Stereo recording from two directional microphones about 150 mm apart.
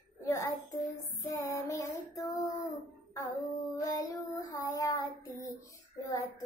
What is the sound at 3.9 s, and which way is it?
Child singing, 25° left (ahead or behind).